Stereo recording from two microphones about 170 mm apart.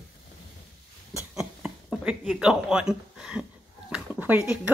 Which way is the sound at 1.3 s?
5° right (ahead or behind).